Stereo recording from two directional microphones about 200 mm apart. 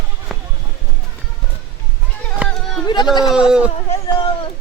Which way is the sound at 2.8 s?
20° left (ahead or behind).